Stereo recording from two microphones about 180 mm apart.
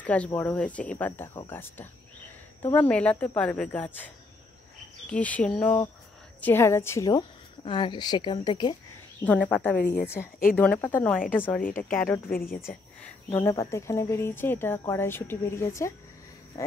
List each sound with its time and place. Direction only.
0.0 s speech: 10° left (ahead or behind)
5.1 s a woman's voice: 10° left (ahead or behind); by 8.7 s 25° left (ahead or behind)
9.2 s speech: 10° left (ahead or behind)
9.8 s a woman's voice: 65° left (ahead or behind)
10.5 s speech: 10° left (ahead or behind)
11.6 s speech: 50° left (ahead or behind)
13.0 s speech: 15° left (ahead or behind)